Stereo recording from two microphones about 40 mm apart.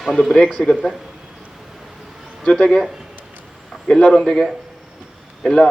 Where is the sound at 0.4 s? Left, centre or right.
Left.